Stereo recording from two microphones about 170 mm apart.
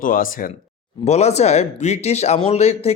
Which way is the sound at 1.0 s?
40° left (ahead or behind).